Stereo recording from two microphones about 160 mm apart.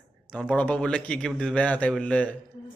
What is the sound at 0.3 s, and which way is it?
Speech, 10° left (ahead or behind).